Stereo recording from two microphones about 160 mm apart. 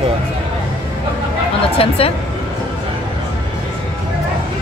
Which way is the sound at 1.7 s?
35° left (ahead or behind).